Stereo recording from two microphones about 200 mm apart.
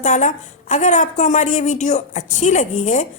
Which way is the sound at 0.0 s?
35° left (ahead or behind).